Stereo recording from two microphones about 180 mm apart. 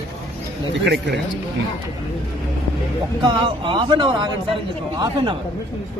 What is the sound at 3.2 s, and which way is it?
A man's voice, 25° right (ahead or behind).